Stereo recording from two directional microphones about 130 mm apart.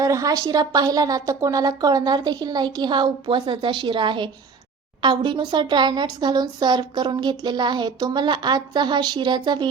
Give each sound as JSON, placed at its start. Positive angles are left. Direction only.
{"t": 0.0, "sound": "a woman's voice", "side_deg": -25}